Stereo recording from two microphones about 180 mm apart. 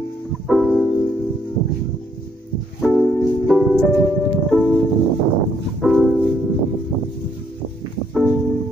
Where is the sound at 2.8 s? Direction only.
Centre (ahead or behind).